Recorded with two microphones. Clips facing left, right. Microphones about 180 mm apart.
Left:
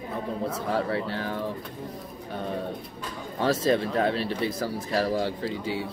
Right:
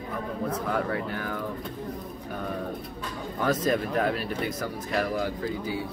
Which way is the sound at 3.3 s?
30° left (ahead or behind).